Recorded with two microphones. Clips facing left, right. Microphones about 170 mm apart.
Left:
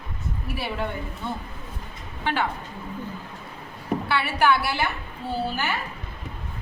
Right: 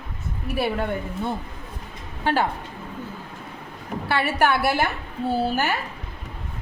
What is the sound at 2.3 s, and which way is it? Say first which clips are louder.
Speech: right 4 dB; 40° right (ahead or behind).